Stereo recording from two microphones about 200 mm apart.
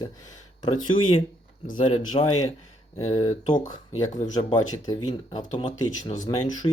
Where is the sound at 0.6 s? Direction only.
25° left (ahead or behind).